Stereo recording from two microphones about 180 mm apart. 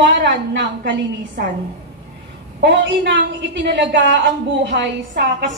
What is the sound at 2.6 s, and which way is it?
A woman's voice, 85° right.